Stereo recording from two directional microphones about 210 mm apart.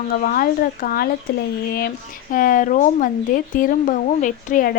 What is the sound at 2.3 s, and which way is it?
Speech, 40° left (ahead or behind).